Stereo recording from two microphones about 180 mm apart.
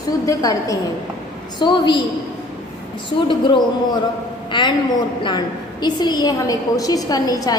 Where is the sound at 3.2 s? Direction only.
25° left (ahead or behind).